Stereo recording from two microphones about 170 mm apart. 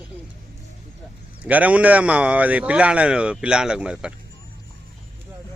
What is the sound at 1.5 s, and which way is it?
Speech, 10° right (ahead or behind).